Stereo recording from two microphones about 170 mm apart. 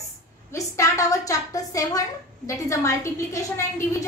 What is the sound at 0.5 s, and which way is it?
A woman's voice, 20° left (ahead or behind).